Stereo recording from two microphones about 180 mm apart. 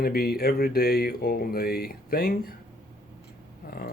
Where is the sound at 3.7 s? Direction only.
55° left (ahead or behind).